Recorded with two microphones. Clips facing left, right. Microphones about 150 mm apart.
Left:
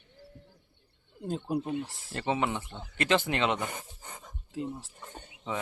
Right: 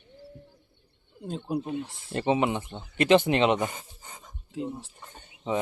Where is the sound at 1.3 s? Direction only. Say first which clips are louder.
Right 1 dB; centre (ahead or behind).